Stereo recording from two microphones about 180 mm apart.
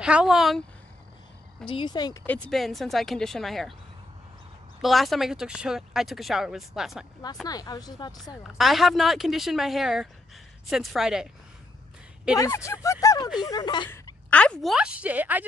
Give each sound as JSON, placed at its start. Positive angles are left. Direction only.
{"t": 0.0, "sound": "speech", "side_deg": -5}
{"t": 1.7, "sound": "speech", "side_deg": 25}
{"t": 2.5, "sound": "speech", "side_deg": 0}
{"t": 4.8, "sound": "speech", "side_deg": 0}
{"t": 7.4, "sound": "speech", "side_deg": 20}
{"t": 8.5, "sound": "speech", "side_deg": 0}
{"t": 12.4, "sound": "a woman's voice", "side_deg": 15}